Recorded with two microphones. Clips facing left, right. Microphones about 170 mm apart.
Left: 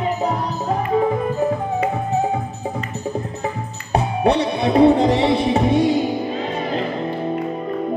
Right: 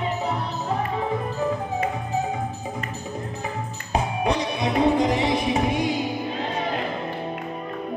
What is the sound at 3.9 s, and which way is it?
Music, 30° left (ahead or behind).